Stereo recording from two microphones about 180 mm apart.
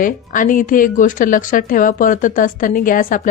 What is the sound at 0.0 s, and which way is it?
A woman's voice, 50° left (ahead or behind).